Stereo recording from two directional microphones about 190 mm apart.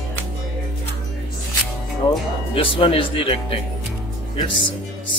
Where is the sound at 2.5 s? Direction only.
30° left (ahead or behind).